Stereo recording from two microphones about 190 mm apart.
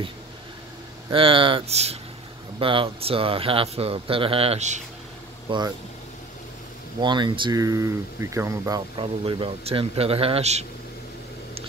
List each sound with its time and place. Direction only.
1.1 s speech: 30° right (ahead or behind)
5.5 s speech: 25° right (ahead or behind)
7.0 s speech: 25° right (ahead or behind)